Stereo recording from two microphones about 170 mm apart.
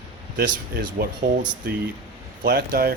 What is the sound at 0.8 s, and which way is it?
Speech, 60° right (ahead or behind).